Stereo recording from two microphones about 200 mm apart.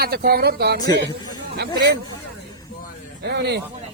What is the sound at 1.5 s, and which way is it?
Speech, 60° right (ahead or behind).